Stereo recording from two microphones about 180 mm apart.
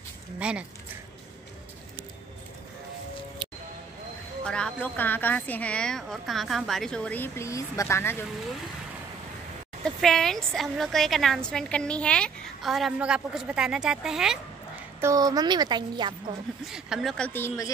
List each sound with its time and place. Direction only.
0.4 s speech: 5° right (ahead or behind)
4.5 s a woman's voice: 5° left (ahead or behind)
10.0 s a woman's voice: centre (ahead or behind)
15.0 s a woman's voice: 20° right (ahead or behind)
16.6 s a woman's voice: centre (ahead or behind)
17.3 s a woman's voice: 10° left (ahead or behind)